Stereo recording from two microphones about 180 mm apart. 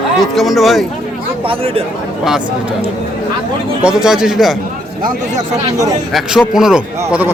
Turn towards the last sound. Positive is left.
turn(degrees=-5)  # may be behind; listen again after turning